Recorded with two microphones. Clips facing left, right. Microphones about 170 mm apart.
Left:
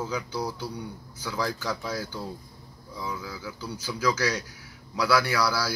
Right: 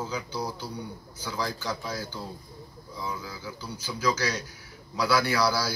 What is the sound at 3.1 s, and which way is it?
Speech, 30° right (ahead or behind).